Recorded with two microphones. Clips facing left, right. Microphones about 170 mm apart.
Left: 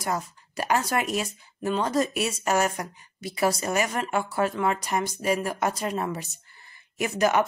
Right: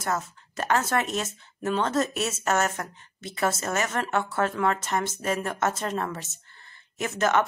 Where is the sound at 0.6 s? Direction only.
15° left (ahead or behind).